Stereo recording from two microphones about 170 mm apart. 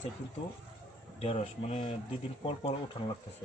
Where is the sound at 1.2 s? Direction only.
35° left (ahead or behind).